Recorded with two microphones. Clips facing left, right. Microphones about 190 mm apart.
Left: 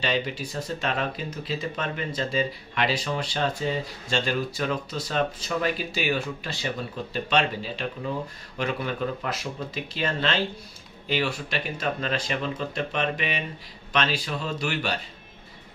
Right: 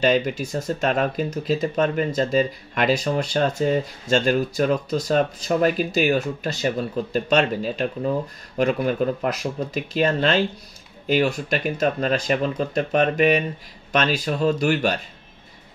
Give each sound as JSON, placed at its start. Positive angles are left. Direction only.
{"t": 0.0, "sound": "speech", "side_deg": -45}